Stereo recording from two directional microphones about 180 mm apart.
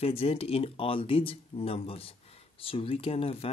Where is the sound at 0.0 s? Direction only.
30° left (ahead or behind).